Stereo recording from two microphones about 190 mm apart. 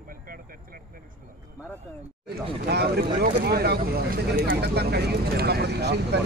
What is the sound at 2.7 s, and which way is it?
Speech, 55° right (ahead or behind).